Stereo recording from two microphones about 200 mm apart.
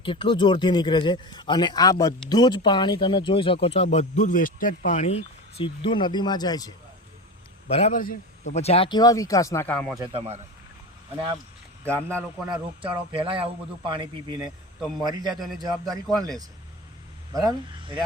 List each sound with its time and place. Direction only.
0.0 s speech: 25° left (ahead or behind)
7.7 s speech: 35° left (ahead or behind); by 10.0 s 5° left (ahead or behind)
10.0 s a man's voice: 30° right (ahead or behind)
11.9 s speech: 5° left (ahead or behind)
12.5 s a man's voice: 25° right (ahead or behind)
17.3 s a man's voice: 20° right (ahead or behind)